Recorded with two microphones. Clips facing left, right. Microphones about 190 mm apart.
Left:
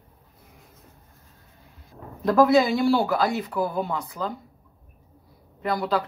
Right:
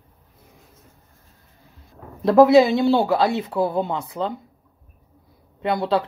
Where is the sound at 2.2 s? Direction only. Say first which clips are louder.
Right 5 dB; 25° right (ahead or behind).